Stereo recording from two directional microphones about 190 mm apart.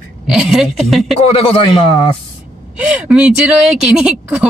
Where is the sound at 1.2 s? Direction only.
30° left (ahead or behind).